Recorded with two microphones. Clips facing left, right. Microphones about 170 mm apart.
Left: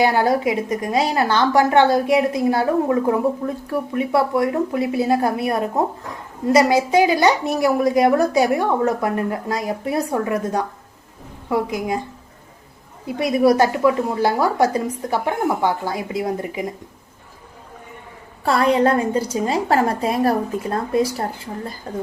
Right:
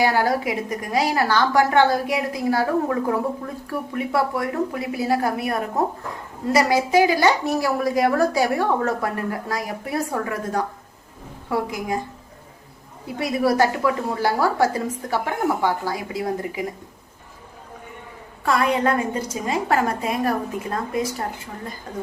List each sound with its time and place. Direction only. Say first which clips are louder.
0.0 s a woman's voice: left 3 dB; 20° left (ahead or behind)
13.1 s a woman's voice: left 5 dB; 20° left (ahead or behind)
18.4 s a woman's voice: left 4 dB; 30° left (ahead or behind)